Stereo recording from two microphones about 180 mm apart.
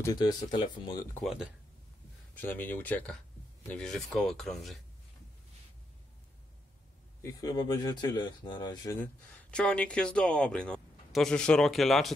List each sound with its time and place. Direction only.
0.0 s speech: 20° left (ahead or behind)
1.2 s speech: centre (ahead or behind)
2.3 s speech: 10° left (ahead or behind)
7.2 s speech: 20° left (ahead or behind)
9.0 s speech: 5° left (ahead or behind)